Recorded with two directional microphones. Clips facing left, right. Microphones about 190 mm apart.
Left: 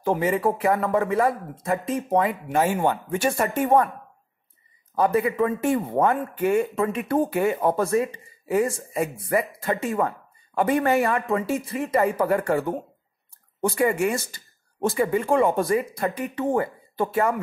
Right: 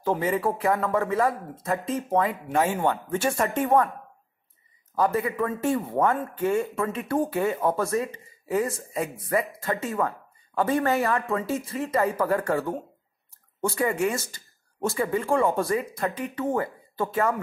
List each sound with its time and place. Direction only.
0.0 s speech: 10° left (ahead or behind)
4.9 s speech: 15° left (ahead or behind)